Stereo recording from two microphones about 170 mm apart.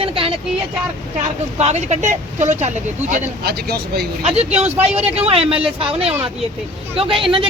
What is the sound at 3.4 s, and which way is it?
Speech, 65° right (ahead or behind).